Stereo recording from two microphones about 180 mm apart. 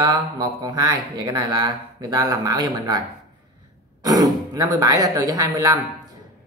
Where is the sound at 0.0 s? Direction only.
25° right (ahead or behind).